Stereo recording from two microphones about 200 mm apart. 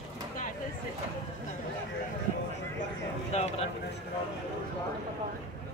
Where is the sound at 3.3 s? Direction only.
35° left (ahead or behind).